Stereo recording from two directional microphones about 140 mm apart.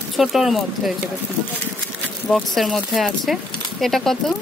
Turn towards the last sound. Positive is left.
turn(degrees=0)  # may be behind; listen again after turning